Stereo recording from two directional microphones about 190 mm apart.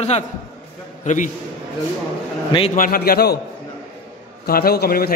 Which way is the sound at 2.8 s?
50° left (ahead or behind).